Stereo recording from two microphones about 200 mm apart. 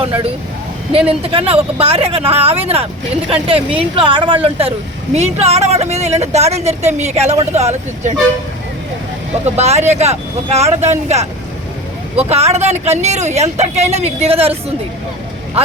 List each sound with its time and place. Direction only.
0.0 s a woman's voice: 30° right (ahead or behind)
9.6 s a woman's voice: 35° right (ahead or behind)
12.3 s a woman's voice: 30° right (ahead or behind)